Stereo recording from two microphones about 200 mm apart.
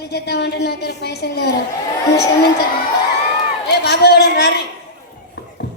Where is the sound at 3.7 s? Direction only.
55° left (ahead or behind).